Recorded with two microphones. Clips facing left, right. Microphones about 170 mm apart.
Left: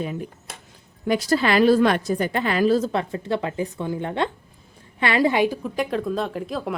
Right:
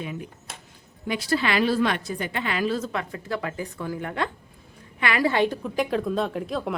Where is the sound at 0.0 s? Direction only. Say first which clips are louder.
Left 5 dB; 40° left (ahead or behind).